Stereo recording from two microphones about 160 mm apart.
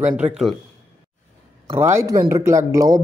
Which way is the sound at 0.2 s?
Centre (ahead or behind).